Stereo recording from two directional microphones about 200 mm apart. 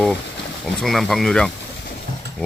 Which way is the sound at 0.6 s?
Centre (ahead or behind).